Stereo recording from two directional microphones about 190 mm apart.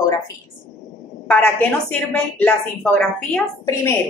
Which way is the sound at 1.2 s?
5° left (ahead or behind).